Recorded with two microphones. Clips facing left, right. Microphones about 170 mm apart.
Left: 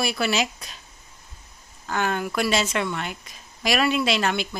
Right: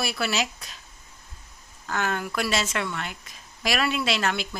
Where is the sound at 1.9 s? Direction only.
Centre (ahead or behind).